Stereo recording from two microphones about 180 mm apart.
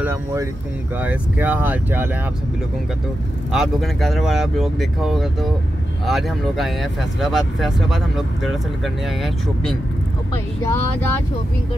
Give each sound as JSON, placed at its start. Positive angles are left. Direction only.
{"t": 0.0, "sound": "speech", "side_deg": -15}
{"t": 3.5, "sound": "speech", "side_deg": 0}
{"t": 10.3, "sound": "speech", "side_deg": 15}